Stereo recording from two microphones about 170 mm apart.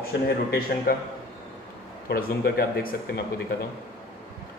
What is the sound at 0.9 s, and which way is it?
Speech, 60° left (ahead or behind).